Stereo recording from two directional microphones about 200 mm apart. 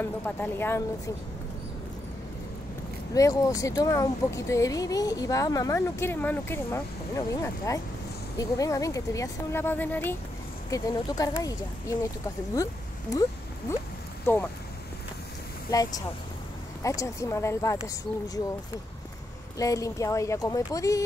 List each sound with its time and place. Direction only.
0.0 s speech: 10° left (ahead or behind)
3.2 s speech: 15° left (ahead or behind)
13.1 s speech: 15° left (ahead or behind)
15.7 s speech: 15° left (ahead or behind)
19.6 s speech: 15° left (ahead or behind)